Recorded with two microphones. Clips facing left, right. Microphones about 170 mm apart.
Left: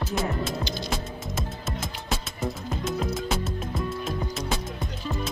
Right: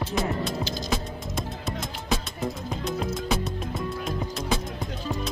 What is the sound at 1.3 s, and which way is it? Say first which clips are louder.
Music: right 2 dB; centre (ahead or behind).